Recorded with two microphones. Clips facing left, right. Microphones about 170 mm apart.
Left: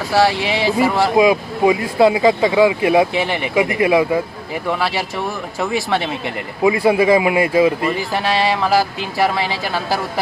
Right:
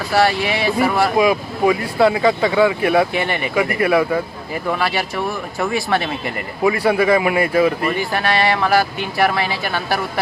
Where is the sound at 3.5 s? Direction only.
20° left (ahead or behind).